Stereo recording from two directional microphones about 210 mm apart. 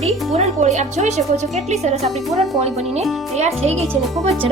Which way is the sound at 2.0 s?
Centre (ahead or behind).